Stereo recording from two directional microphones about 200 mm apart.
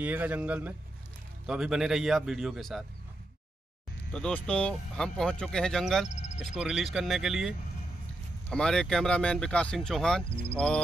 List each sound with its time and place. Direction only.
0.0 s a man's voice: 10° right (ahead or behind)
4.1 s speech: 5° left (ahead or behind)
6.0 s a sound: 35° left (ahead or behind)
6.3 s speech: 5° right (ahead or behind)